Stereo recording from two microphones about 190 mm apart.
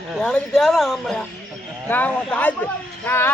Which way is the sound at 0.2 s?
5° left (ahead or behind).